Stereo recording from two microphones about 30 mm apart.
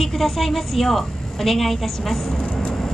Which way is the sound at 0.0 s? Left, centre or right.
Centre.